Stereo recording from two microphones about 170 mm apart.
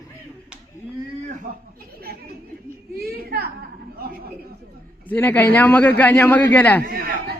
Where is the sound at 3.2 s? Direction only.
65° right (ahead or behind).